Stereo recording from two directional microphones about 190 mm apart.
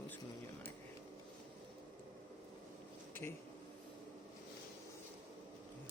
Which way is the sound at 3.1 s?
10° left (ahead or behind).